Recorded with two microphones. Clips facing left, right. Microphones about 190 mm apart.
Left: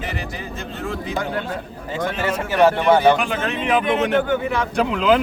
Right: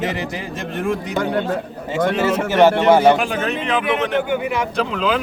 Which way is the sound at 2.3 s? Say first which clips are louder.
Right 1 dB; 80° right.